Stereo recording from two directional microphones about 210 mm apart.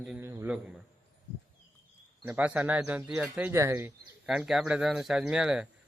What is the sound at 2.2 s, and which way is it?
A man's voice, 5° right (ahead or behind).